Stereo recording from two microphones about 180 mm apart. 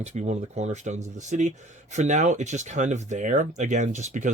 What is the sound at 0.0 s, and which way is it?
Speech, 40° right (ahead or behind).